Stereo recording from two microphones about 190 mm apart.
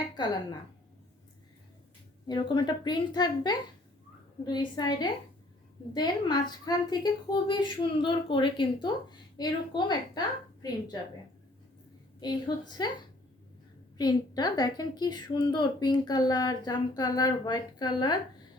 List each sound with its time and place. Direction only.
2.2 s a woman's voice: 25° left (ahead or behind)
12.2 s a woman's voice: 20° left (ahead or behind)
14.0 s a woman's voice: 20° left (ahead or behind)